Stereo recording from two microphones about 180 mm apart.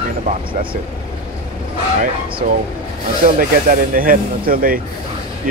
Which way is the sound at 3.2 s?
45° right (ahead or behind).